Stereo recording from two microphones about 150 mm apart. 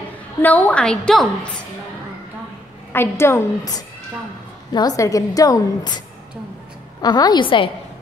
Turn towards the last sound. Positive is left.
turn(degrees=35)  # may be behind; listen again after turning